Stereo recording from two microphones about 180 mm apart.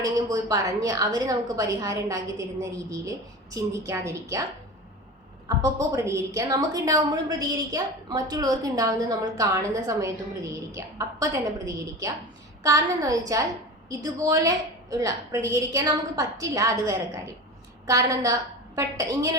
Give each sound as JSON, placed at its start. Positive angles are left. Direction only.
{"t": 0.0, "sound": "a woman's voice", "side_deg": -20}
{"t": 5.9, "sound": "a woman's voice", "side_deg": -15}